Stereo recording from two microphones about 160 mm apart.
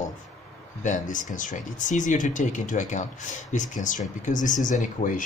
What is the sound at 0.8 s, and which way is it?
Speech, 50° left (ahead or behind).